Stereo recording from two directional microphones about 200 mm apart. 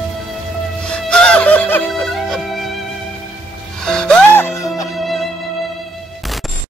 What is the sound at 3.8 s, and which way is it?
Music, 5° left (ahead or behind).